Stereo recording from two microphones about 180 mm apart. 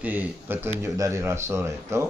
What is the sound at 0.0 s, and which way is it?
Speech, 10° right (ahead or behind).